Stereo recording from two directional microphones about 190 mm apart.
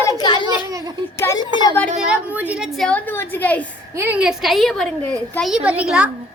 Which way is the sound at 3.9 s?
10° right (ahead or behind).